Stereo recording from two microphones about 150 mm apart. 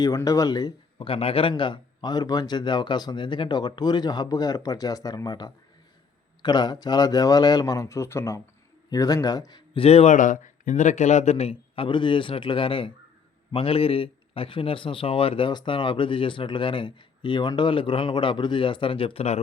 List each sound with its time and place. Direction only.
0.0 s a man's voice: 20° left (ahead or behind)
9.8 s a man's voice: 45° left (ahead or behind)